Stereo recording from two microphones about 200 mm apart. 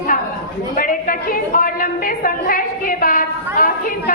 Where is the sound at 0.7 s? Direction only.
45° left (ahead or behind).